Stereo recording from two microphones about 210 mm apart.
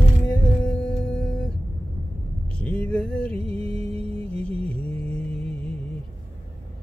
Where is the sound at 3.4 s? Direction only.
25° right (ahead or behind).